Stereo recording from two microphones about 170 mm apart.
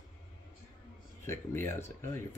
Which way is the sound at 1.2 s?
15° left (ahead or behind).